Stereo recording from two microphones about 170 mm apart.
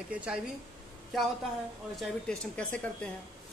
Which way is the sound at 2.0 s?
5° left (ahead or behind).